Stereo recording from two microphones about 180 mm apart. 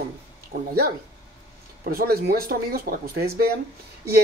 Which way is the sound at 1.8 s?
55° right (ahead or behind).